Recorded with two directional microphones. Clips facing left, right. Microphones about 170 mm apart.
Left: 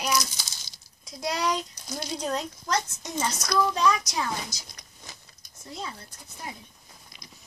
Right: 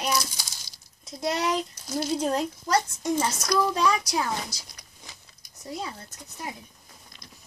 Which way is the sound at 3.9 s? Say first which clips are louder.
Right 2 dB; 30° right (ahead or behind).